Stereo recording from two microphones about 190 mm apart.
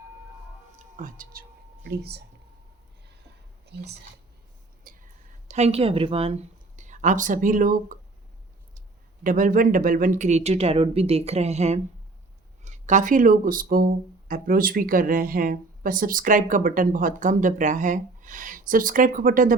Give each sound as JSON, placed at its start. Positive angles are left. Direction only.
{"t": 0.8, "sound": "a sound", "side_deg": -45}
{"t": 3.7, "sound": "a woman's voice", "side_deg": -60}
{"t": 4.8, "sound": "whispering", "side_deg": -45}
{"t": 5.5, "sound": "speech", "side_deg": -35}
{"t": 9.2, "sound": "speech", "side_deg": -45}